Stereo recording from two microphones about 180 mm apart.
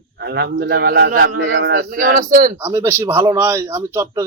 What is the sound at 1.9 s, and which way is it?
Speech, 50° right (ahead or behind).